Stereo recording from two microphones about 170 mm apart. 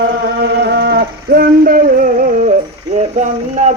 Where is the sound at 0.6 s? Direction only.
75° right (ahead or behind).